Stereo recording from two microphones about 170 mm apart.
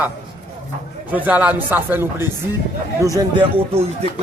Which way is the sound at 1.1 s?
10° right (ahead or behind).